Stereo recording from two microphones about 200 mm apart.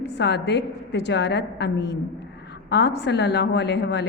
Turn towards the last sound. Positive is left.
turn(degrees=60)  # may be behind; listen again after turning